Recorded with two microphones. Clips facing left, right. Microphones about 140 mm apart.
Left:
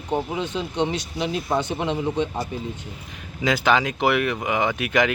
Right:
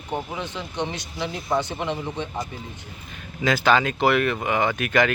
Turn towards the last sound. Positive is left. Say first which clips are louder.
# even
turn(degrees=15)  # may be behind; listen again after turning